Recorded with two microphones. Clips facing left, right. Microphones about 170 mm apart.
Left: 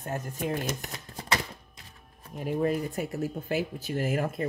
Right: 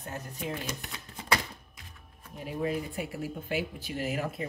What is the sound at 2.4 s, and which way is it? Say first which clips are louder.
Speech: left 5 dB; 45° left (ahead or behind).